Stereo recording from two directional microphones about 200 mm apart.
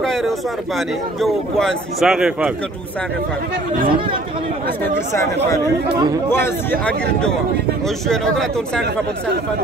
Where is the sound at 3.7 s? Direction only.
45° right (ahead or behind).